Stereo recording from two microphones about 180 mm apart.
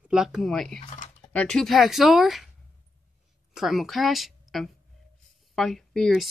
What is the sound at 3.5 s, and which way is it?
Speech, centre (ahead or behind).